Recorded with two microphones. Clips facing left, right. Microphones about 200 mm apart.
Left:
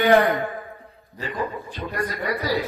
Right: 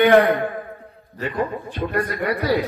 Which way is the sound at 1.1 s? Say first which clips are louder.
Right 4 dB; 60° right (ahead or behind).